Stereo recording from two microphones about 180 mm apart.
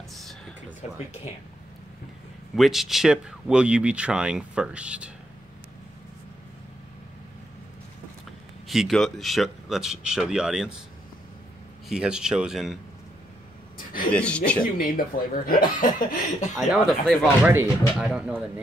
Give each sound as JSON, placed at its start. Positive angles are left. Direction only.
{"t": 2.5, "sound": "speech", "side_deg": 0}
{"t": 8.6, "sound": "speech", "side_deg": 0}
{"t": 11.9, "sound": "speech", "side_deg": -5}
{"t": 14.1, "sound": "speech", "side_deg": 5}
{"t": 14.6, "sound": "speech", "side_deg": 55}
{"t": 16.5, "sound": "speech", "side_deg": 0}
{"t": 17.4, "sound": "speech", "side_deg": -10}